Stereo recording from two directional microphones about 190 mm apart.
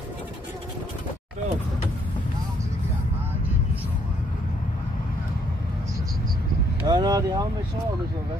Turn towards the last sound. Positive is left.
turn(degrees=-20)  # may be behind; listen again after turning